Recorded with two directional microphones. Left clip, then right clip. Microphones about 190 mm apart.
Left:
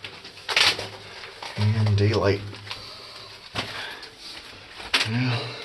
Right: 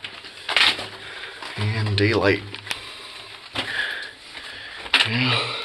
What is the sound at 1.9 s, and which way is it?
Speech, centre (ahead or behind).